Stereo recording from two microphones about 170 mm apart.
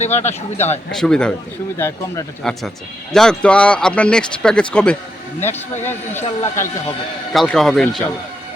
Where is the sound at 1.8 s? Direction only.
15° left (ahead or behind).